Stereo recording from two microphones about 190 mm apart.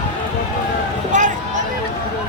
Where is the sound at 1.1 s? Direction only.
40° right (ahead or behind).